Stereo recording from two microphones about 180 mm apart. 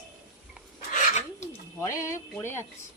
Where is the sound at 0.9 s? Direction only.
40° left (ahead or behind).